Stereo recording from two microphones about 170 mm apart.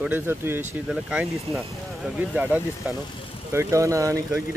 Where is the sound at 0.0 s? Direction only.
10° right (ahead or behind).